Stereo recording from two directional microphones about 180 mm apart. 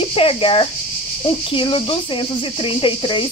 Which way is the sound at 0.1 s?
30° left (ahead or behind).